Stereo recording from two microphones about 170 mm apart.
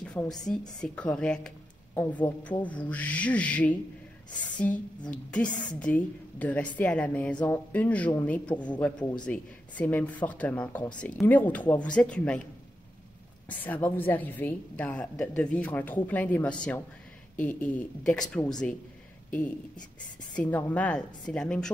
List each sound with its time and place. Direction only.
0.0 s a woman's voice: 5° left (ahead or behind)
5.0 s a woman's voice: 5° left (ahead or behind)
13.5 s a woman's voice: 10° left (ahead or behind)
20.3 s a woman's voice: 10° left (ahead or behind)